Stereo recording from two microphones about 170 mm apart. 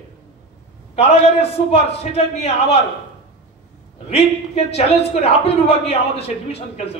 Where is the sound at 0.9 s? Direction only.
40° left (ahead or behind).